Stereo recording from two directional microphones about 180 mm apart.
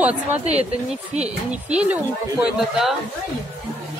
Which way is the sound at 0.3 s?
35° right (ahead or behind).